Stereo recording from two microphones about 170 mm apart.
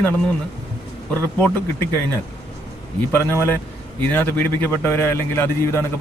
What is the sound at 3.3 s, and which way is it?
A man's voice, 10° left (ahead or behind).